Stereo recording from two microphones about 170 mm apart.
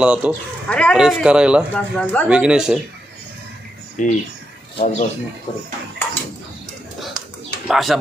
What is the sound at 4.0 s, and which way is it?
Speech, 50° left (ahead or behind).